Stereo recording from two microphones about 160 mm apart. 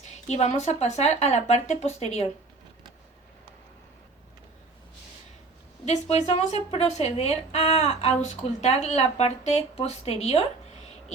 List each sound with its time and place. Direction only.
0.0 s speech: 45° left (ahead or behind)
5.8 s speech: 45° left (ahead or behind)